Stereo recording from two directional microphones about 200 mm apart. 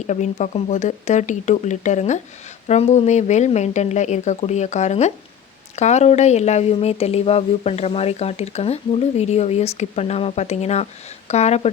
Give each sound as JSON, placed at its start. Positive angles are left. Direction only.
{"t": 0.1, "sound": "speech", "side_deg": 35}